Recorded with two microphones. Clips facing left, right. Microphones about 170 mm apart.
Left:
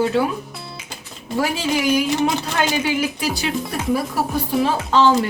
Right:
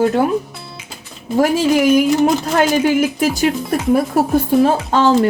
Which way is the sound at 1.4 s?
50° right (ahead or behind).